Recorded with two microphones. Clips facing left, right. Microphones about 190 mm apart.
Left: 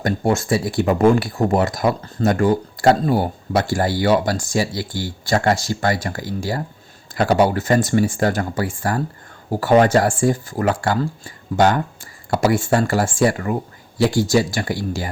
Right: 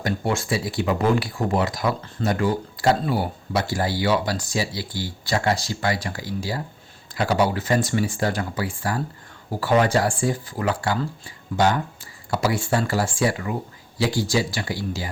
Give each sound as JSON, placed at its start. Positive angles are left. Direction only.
{"t": 0.0, "sound": "speech", "side_deg": 45}